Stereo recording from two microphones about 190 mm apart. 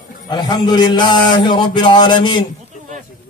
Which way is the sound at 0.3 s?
20° left (ahead or behind).